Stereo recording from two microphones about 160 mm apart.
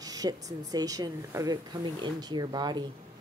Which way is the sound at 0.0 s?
25° right (ahead or behind).